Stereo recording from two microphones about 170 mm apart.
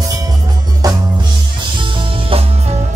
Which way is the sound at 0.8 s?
20° right (ahead or behind).